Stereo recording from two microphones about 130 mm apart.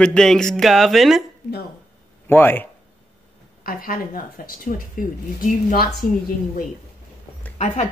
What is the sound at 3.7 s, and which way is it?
Speech, 90° left.